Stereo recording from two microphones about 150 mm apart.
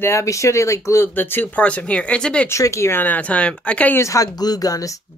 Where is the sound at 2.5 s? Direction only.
20° left (ahead or behind).